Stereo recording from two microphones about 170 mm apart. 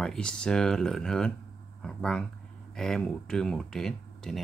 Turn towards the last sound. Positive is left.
turn(degrees=5)  # may be behind; listen again after turning